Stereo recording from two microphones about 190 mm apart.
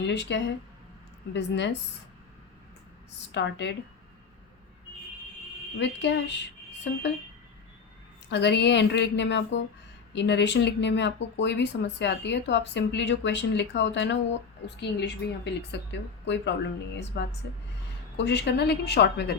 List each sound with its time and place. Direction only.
0.0 s speech: 65° left (ahead or behind)
3.3 s speech: 65° left (ahead or behind)
5.8 s speech: 65° left (ahead or behind)
8.3 s speech: 65° left (ahead or behind)